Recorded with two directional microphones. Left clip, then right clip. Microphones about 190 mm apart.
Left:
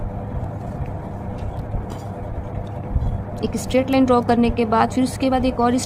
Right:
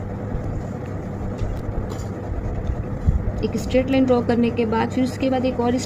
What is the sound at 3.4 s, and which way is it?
Speech, 55° left (ahead or behind).